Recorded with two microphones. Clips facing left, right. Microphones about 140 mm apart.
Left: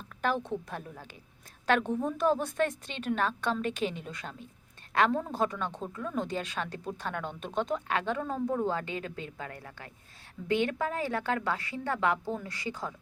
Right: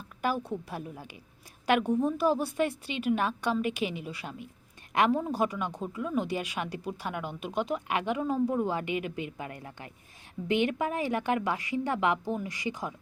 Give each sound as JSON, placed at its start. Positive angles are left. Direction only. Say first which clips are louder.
{"t": 0.2, "sound": "speech", "louder": "even", "side_deg": -10}